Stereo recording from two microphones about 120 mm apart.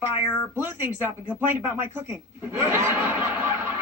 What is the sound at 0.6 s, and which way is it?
A man's voice, 15° right (ahead or behind).